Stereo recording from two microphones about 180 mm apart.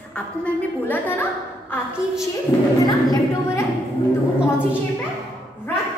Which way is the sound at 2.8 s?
20° left (ahead or behind).